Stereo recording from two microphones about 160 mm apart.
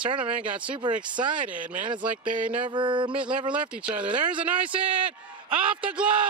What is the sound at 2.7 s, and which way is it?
Speech, 30° right (ahead or behind).